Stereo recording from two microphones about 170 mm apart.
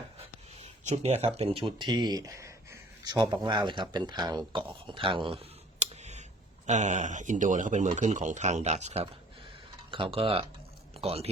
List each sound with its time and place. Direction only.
0.6 s speech: 40° right (ahead or behind)